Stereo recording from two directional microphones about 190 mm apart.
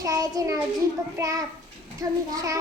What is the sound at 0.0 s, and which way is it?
Child singing, 20° right (ahead or behind).